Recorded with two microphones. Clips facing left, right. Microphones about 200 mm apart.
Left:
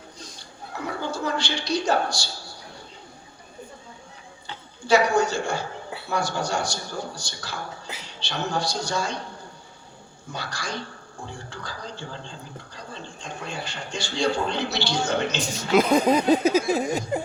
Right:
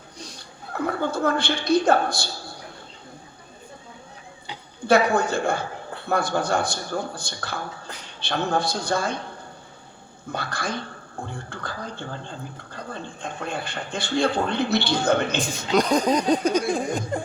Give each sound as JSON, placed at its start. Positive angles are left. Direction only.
{"t": 0.3, "sound": "a woman's voice", "side_deg": -55}
{"t": 4.9, "sound": "speech", "side_deg": -55}
{"t": 10.3, "sound": "speech", "side_deg": -55}
{"t": 15.7, "sound": "speech", "side_deg": 5}